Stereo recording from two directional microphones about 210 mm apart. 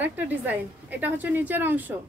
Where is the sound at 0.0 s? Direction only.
10° right (ahead or behind).